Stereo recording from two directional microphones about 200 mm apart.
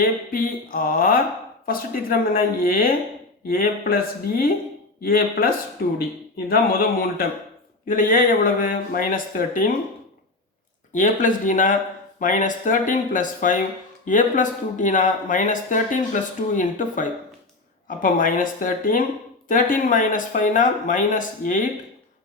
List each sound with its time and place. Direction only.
0.0 s speech: 45° left (ahead or behind)
10.9 s speech: 40° left (ahead or behind)